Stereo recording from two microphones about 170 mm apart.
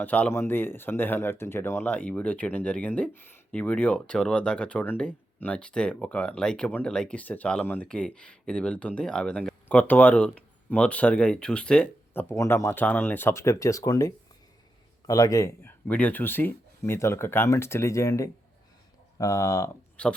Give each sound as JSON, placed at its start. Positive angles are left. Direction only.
{"t": 0.0, "sound": "speech", "side_deg": 10}
{"t": 12.3, "sound": "speech", "side_deg": 15}
{"t": 20.0, "sound": "speech", "side_deg": 5}